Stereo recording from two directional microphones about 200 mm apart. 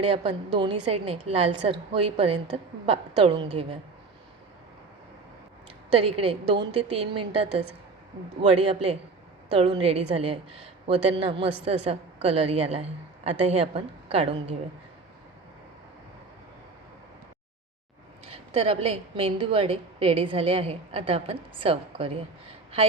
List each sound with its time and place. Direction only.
0.1 s a woman's voice: 25° right (ahead or behind)
5.9 s a woman's voice: 30° right (ahead or behind)
18.3 s a woman's voice: 30° right (ahead or behind)